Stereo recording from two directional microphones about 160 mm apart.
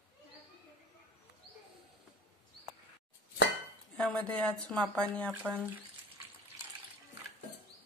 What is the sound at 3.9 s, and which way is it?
Speech, 5° left (ahead or behind).